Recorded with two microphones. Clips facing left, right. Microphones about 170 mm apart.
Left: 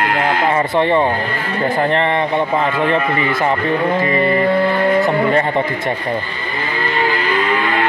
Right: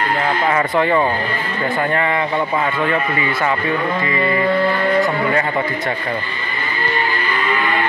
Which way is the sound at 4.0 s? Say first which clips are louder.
Left 3 dB; 30° left (ahead or behind).